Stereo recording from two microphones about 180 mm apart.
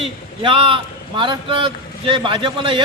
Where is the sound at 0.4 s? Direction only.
30° right (ahead or behind).